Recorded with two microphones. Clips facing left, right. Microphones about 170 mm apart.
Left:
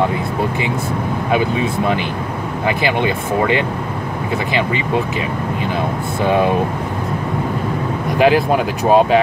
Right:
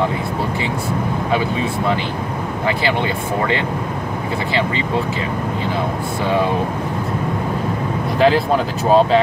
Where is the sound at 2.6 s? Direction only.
15° left (ahead or behind).